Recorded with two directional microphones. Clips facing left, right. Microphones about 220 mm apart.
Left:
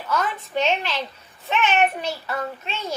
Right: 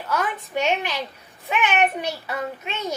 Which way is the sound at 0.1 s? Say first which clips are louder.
Left 1 dB; 15° right (ahead or behind).